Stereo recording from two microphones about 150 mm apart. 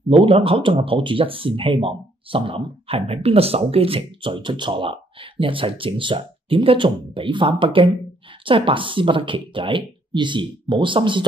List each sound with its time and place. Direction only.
0.1 s speech: 40° right (ahead or behind)